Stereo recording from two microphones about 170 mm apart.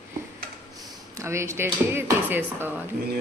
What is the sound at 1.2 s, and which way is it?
Speech, 15° right (ahead or behind).